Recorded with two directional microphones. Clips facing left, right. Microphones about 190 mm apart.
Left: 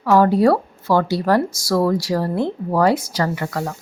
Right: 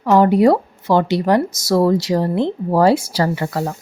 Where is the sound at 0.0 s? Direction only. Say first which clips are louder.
Right 2 dB; 20° right (ahead or behind).